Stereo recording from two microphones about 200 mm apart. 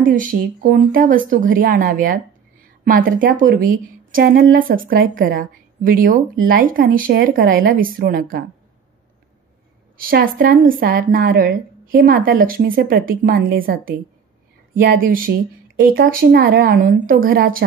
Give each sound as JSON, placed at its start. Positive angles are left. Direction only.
{"t": 0.0, "sound": "a woman's voice", "side_deg": -40}
{"t": 9.9, "sound": "a woman's voice", "side_deg": -45}